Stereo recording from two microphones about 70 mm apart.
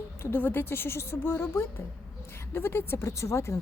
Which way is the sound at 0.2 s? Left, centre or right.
Left.